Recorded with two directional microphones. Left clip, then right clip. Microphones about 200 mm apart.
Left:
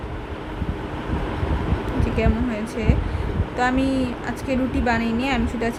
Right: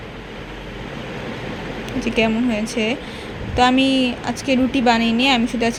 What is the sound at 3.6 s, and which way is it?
A woman's voice, 15° right (ahead or behind).